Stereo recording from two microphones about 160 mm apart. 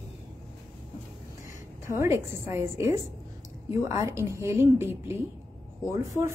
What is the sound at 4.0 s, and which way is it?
A woman's voice, 20° right (ahead or behind).